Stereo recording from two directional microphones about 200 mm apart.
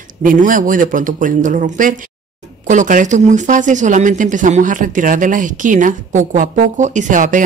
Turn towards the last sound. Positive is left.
turn(degrees=-40)  # may be behind; listen again after turning